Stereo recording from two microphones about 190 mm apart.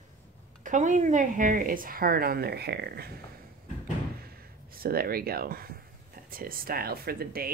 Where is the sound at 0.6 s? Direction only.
40° right (ahead or behind); by 3.1 s 60° right (ahead or behind).